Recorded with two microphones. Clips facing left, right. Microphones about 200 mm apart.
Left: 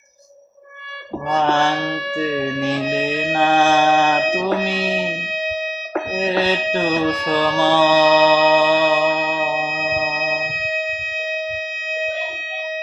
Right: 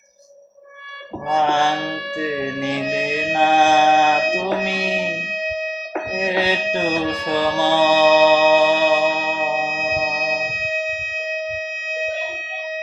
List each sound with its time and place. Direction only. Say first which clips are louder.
1.3 s mantra: even; 15° right (ahead or behind)
2.1 s music: left 2 dB; 15° right (ahead or behind)
4.9 s music: left 1 dB; 20° left (ahead or behind)
6.1 s music: left 1 dB; 15° right (ahead or behind)